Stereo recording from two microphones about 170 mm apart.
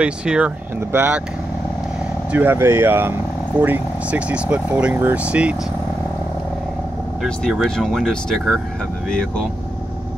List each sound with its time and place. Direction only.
0.0 s speech: 5° right (ahead or behind)
2.3 s speech: 15° right (ahead or behind)
7.2 s speech: 5° left (ahead or behind)